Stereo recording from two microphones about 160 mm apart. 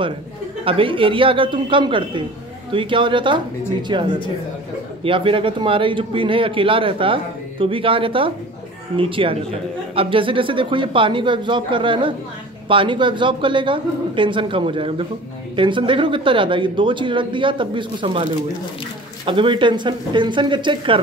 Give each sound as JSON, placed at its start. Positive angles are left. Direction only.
{"t": 0.7, "sound": "a man's voice", "side_deg": -35}